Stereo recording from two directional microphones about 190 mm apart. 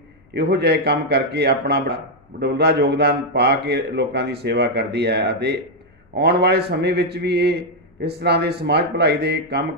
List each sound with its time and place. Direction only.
0.3 s speech: 60° right (ahead or behind)